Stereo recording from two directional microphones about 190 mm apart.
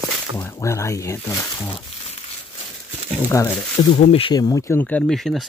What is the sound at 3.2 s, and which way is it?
Speech, 15° left (ahead or behind).